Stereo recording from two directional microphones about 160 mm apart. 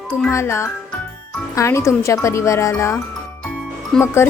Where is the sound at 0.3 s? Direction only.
15° left (ahead or behind).